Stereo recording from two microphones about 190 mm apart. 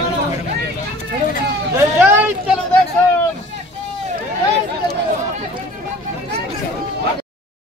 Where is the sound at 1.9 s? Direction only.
10° right (ahead or behind).